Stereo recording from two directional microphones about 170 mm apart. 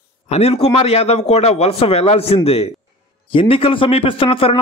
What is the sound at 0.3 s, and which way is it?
A man's voice, 40° left (ahead or behind).